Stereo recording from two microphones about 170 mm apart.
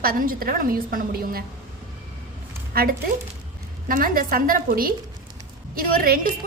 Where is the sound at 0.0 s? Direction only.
60° right (ahead or behind).